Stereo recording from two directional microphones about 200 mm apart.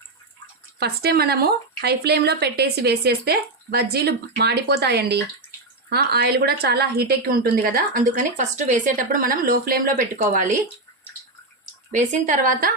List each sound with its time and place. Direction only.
0.8 s a woman's voice: 50° right (ahead or behind)
11.9 s a woman's voice: 40° right (ahead or behind)